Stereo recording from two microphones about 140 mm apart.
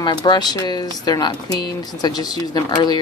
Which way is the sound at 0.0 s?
30° left (ahead or behind).